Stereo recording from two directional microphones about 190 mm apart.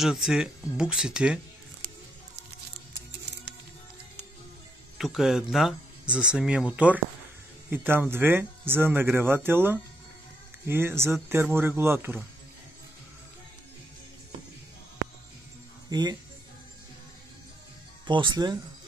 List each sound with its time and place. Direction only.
0.0 s speech: centre (ahead or behind)
4.9 s speech: centre (ahead or behind)
15.9 s speech: 20° right (ahead or behind)
18.0 s speech: 25° right (ahead or behind)